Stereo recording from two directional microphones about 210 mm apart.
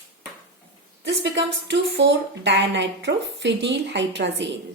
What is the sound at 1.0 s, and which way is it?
A woman's voice, 55° right (ahead or behind).